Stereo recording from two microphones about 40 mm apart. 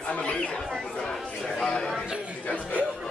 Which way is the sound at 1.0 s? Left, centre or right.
Centre.